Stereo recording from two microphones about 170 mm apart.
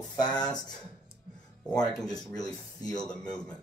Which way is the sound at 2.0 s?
25° left (ahead or behind).